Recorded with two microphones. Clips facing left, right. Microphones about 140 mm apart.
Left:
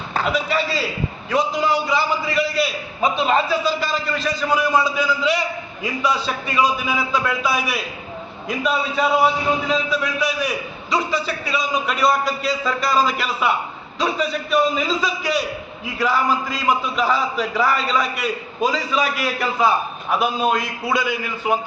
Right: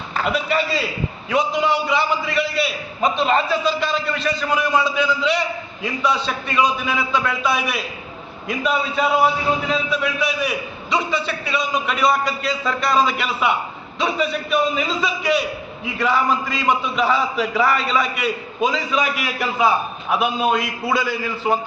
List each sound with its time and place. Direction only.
0.3 s a man's voice: centre (ahead or behind)